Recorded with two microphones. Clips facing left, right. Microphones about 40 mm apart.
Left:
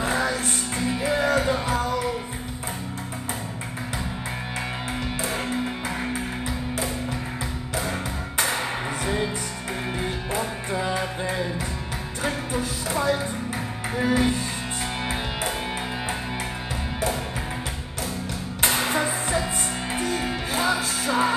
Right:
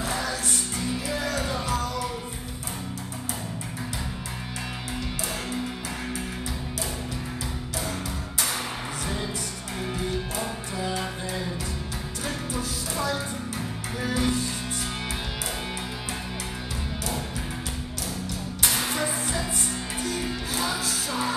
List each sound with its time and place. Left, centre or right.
0.0 s music: left
9.0 s music: left
18.6 s music: left